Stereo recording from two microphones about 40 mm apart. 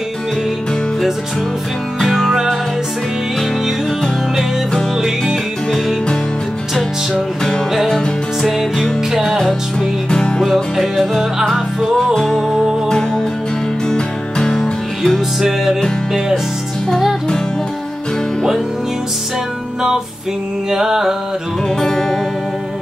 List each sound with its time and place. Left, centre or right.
2.0 s music: centre
5.2 s music: centre
8.4 s music: centre
9.4 s music: centre
10.4 s music: centre
15.1 s music: centre
20.7 s music: centre
21.7 s music: centre